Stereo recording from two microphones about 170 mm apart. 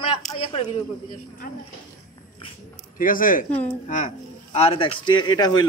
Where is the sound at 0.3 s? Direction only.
35° left (ahead or behind).